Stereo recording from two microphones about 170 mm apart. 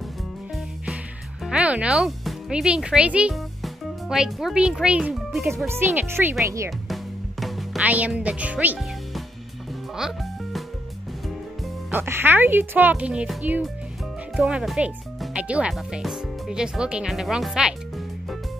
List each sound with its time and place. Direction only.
1.4 s speech: 5° right (ahead or behind)
5.7 s speech: 15° right (ahead or behind)
6.9 s music: centre (ahead or behind)
11.9 s speech: 15° right (ahead or behind)